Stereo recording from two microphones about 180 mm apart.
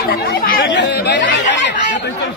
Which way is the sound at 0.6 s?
85° left.